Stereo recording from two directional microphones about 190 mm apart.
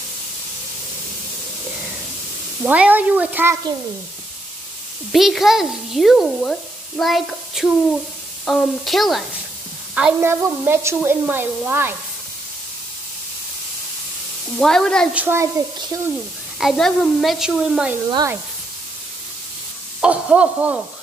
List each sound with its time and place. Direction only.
2.6 s a woman's voice: 5° right (ahead or behind)
5.1 s a child's voice: centre (ahead or behind)
14.6 s a child's voice: 5° left (ahead or behind)
15.1 s a woman's voice: 10° right (ahead or behind)
16.5 s a child's voice: centre (ahead or behind)
18.1 s a woman's voice: 15° right (ahead or behind)
20.0 s a child's voice: 5° right (ahead or behind)